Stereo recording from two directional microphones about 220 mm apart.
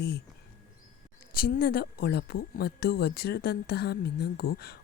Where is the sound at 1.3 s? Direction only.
40° left (ahead or behind).